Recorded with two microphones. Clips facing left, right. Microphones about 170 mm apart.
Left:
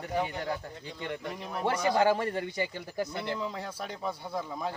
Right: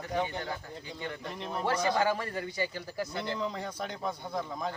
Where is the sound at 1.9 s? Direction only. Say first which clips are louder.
Left 4 dB; 25° left (ahead or behind).